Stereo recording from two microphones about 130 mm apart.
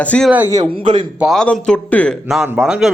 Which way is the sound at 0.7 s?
40° right (ahead or behind).